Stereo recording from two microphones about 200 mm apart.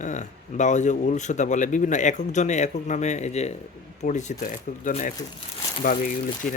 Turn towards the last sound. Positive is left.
turn(degrees=45)  # may be behind; listen again after turning